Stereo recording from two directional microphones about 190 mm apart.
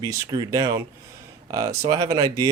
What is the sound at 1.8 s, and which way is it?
Speech, 20° right (ahead or behind).